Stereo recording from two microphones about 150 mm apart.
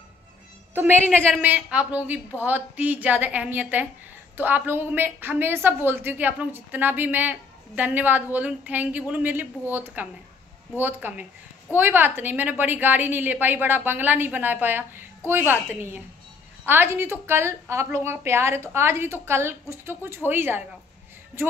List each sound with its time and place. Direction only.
0.7 s a woman's voice: 15° right (ahead or behind)
1.1 s a woman's voice: 5° left (ahead or behind)
1.4 s a woman's voice: 10° right (ahead or behind)